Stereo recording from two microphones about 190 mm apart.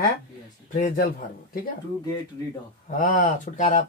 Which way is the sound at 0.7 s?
45° left (ahead or behind).